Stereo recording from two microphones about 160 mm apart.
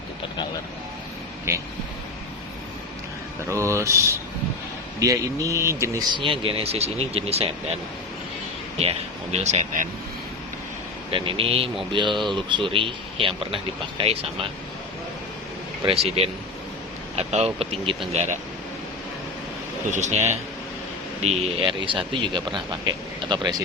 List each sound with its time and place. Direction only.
1.5 s speech: 15° right (ahead or behind)
3.5 s speech: 20° right (ahead or behind)
6.1 s speech: 35° right (ahead or behind)
8.8 s speech: 40° right (ahead or behind)
11.1 s speech: 35° right (ahead or behind)
15.9 s speech: 40° right (ahead or behind)
19.9 s speech: 45° right (ahead or behind); by 23.6 s 25° right (ahead or behind)